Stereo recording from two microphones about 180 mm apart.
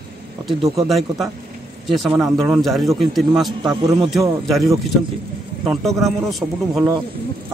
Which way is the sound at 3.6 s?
25° right (ahead or behind).